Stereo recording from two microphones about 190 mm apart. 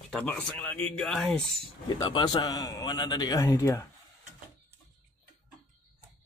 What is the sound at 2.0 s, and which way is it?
Speech, 25° left (ahead or behind).